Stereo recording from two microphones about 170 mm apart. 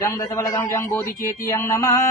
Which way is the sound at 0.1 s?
15° left (ahead or behind).